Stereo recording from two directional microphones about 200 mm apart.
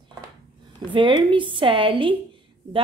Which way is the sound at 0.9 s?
25° right (ahead or behind).